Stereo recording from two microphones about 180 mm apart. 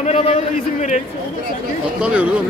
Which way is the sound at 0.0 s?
40° left (ahead or behind).